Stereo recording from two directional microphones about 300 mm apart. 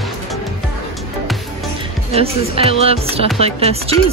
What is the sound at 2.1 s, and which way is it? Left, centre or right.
Speech, centre.